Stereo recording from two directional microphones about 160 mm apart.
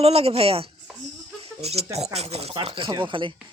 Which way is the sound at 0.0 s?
40° right (ahead or behind).